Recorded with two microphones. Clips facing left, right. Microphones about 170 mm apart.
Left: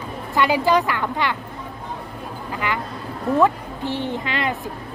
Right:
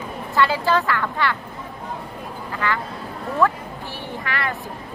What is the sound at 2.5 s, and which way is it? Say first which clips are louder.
A woman's voice: right 1 dB; 15° left (ahead or behind).